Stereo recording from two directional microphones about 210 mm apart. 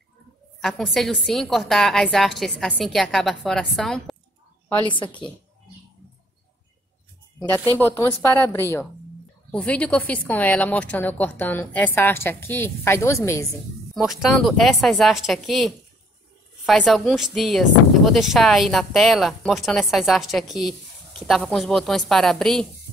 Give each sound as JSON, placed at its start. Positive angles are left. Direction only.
{"t": 0.6, "sound": "a woman's voice", "side_deg": 0}
{"t": 4.8, "sound": "a woman's voice", "side_deg": 20}
{"t": 7.8, "sound": "a woman's voice", "side_deg": 15}
{"t": 13.9, "sound": "a woman's voice", "side_deg": 0}